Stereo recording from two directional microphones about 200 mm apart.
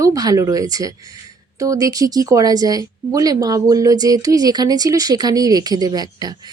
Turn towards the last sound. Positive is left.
turn(degrees=-20)  # may be behind; listen again after turning